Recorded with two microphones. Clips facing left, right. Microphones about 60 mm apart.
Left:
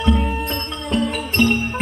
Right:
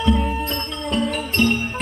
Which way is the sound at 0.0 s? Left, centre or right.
Centre.